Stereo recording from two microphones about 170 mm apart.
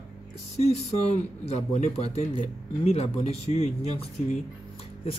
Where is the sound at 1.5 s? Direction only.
40° left (ahead or behind).